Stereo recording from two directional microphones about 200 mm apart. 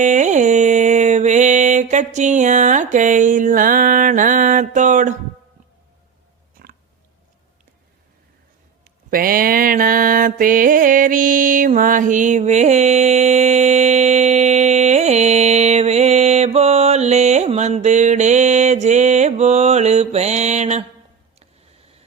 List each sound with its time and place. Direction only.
0.0 s mantra: 35° right (ahead or behind)
9.0 s mantra: 45° right (ahead or behind)